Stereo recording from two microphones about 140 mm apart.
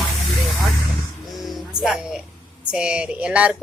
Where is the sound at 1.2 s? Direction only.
Centre (ahead or behind).